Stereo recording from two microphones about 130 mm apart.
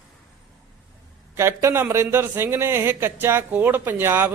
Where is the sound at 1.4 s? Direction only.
20° right (ahead or behind).